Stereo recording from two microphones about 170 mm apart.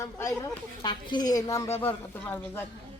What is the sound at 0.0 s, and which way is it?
A woman's voice, 20° left (ahead or behind).